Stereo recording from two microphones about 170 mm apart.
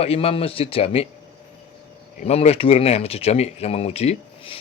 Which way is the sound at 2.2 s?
40° left (ahead or behind).